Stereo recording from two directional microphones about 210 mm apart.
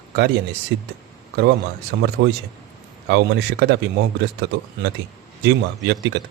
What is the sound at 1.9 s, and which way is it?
A man's voice, 55° right (ahead or behind).